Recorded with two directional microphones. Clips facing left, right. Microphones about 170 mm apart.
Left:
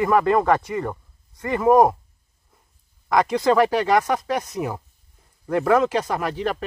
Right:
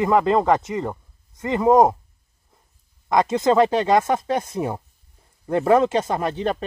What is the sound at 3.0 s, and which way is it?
Speech, 20° right (ahead or behind).